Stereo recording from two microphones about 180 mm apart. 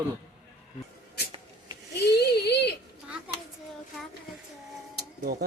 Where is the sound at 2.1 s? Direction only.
65° left (ahead or behind).